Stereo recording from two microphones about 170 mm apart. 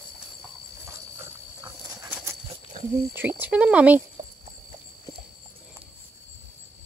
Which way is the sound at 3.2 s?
10° right (ahead or behind).